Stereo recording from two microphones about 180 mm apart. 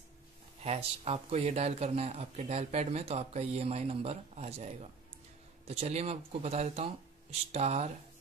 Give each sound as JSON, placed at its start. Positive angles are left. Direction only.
{"t": 0.7, "sound": "speech", "side_deg": -35}